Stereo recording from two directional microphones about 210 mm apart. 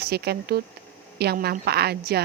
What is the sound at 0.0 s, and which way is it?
A woman's voice, 50° right (ahead or behind).